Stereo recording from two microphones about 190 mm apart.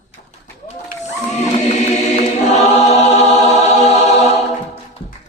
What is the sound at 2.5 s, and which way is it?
Choir, 35° left (ahead or behind).